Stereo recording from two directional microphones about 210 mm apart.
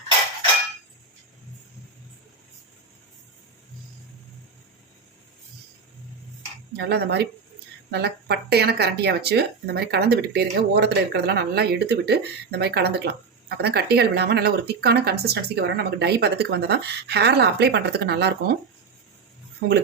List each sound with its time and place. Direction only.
6.7 s speech: 50° right (ahead or behind)